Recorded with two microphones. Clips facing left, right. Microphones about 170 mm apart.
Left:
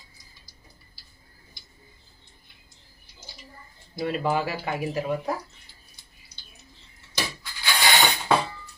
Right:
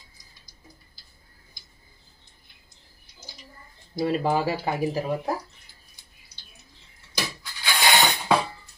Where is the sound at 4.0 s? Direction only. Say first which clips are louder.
Right 2 dB; 30° right (ahead or behind).